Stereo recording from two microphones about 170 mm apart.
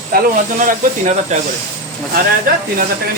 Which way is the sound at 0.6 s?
50° right (ahead or behind).